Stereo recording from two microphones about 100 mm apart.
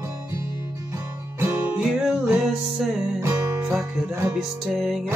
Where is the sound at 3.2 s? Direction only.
30° right (ahead or behind).